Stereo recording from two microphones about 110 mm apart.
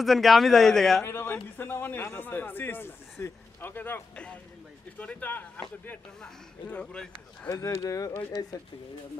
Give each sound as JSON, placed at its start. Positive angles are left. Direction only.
{"t": 0.0, "sound": "speech", "side_deg": 0}
{"t": 1.0, "sound": "a man's voice", "side_deg": 20}
{"t": 7.4, "sound": "speech", "side_deg": 30}